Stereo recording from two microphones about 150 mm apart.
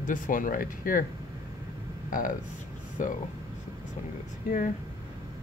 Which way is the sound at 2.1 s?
65° left (ahead or behind).